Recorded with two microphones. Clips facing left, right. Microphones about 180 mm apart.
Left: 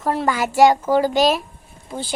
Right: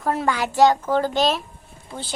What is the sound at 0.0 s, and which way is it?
A woman's voice, centre (ahead or behind).